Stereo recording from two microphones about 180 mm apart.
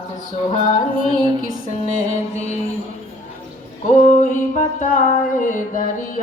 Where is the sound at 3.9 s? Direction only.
45° left (ahead or behind).